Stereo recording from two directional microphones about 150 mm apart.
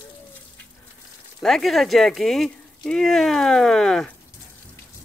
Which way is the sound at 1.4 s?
Centre (ahead or behind).